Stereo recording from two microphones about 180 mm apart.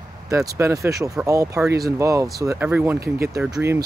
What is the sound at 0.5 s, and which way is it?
Speech, 15° right (ahead or behind).